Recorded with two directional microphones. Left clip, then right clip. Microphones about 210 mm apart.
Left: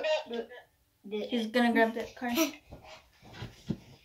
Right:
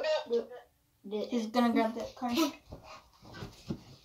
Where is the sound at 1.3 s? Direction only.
20° left (ahead or behind).